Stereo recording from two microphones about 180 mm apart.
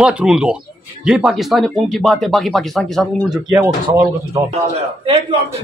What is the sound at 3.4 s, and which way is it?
Speech, 20° right (ahead or behind).